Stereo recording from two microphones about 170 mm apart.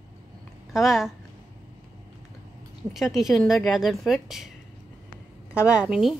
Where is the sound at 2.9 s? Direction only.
Centre (ahead or behind).